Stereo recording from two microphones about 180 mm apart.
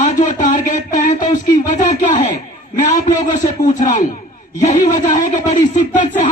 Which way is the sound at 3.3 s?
45° left (ahead or behind).